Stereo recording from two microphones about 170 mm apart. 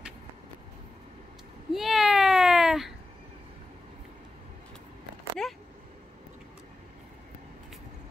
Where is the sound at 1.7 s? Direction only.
Centre (ahead or behind).